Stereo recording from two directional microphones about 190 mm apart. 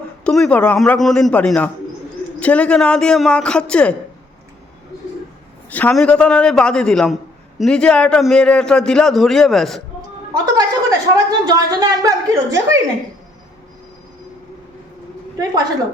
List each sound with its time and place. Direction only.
0.3 s a man's voice: 5° left (ahead or behind)
5.7 s a man's voice: 5° left (ahead or behind)
10.4 s a woman's voice: 20° right (ahead or behind)